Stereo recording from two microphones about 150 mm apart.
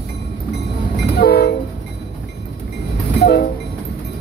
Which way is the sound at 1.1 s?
90° left.